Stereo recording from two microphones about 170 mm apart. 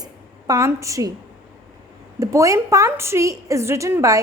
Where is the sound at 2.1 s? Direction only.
20° right (ahead or behind).